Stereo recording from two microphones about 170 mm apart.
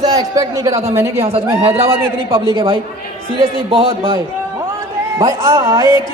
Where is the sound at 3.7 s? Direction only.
35° right (ahead or behind).